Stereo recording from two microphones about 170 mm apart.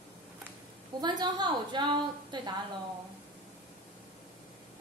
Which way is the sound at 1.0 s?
25° right (ahead or behind).